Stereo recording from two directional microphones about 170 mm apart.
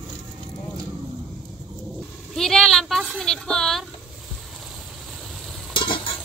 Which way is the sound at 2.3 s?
Centre (ahead or behind).